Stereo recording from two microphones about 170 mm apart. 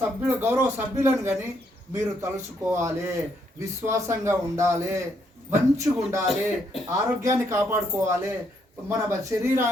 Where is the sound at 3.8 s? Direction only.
15° right (ahead or behind).